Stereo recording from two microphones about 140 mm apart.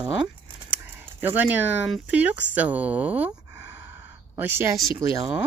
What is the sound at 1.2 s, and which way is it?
Speech, 15° right (ahead or behind).